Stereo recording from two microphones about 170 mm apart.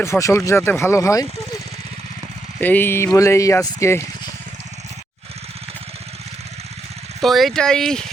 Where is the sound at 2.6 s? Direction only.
10° left (ahead or behind).